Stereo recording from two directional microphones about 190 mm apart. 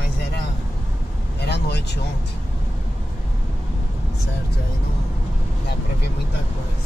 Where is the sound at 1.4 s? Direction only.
60° left (ahead or behind).